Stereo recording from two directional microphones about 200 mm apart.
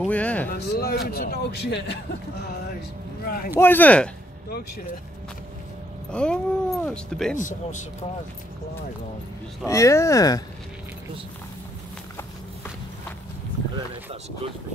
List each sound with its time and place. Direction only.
0.0 s speech: 5° left (ahead or behind)
0.5 s speech: 50° left (ahead or behind)
3.3 s speech: 45° left (ahead or behind)
3.5 s speech: 10° left (ahead or behind)
6.1 s speech: 5° left (ahead or behind)
7.3 s speech: 40° left (ahead or behind)
9.7 s speech: 15° left (ahead or behind)